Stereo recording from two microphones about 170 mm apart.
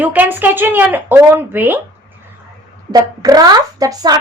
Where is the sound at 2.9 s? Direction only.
20° right (ahead or behind).